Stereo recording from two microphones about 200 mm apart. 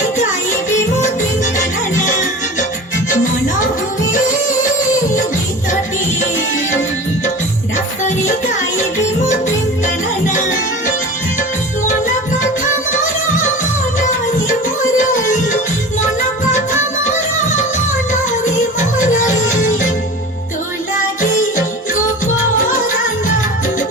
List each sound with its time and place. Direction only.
1.5 s music: 40° left (ahead or behind)
14.9 s music: 40° left (ahead or behind)
18.9 s music: 40° left (ahead or behind)